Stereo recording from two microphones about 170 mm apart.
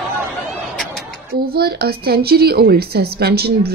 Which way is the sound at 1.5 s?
65° right (ahead or behind).